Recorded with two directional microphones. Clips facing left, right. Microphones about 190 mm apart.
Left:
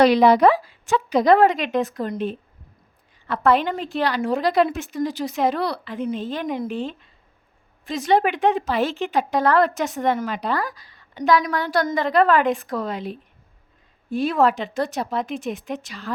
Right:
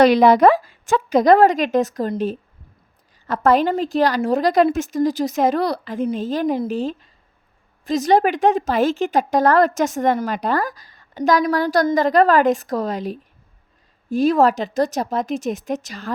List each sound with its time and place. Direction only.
0.0 s a woman's voice: 50° right (ahead or behind)